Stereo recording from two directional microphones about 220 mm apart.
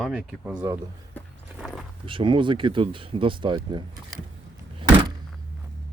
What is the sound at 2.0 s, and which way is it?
Speech, 25° right (ahead or behind).